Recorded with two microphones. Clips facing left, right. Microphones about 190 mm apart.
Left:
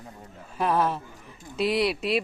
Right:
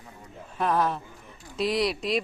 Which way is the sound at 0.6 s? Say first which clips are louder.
Left 1 dB; 5° left (ahead or behind).